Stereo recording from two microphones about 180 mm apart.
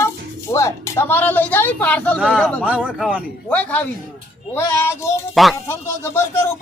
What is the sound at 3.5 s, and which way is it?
A man's voice, 10° left (ahead or behind).